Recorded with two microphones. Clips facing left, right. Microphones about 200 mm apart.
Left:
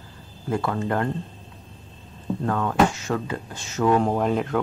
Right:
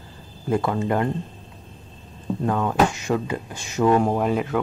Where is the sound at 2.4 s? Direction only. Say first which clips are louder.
Right 1 dB; 15° right (ahead or behind).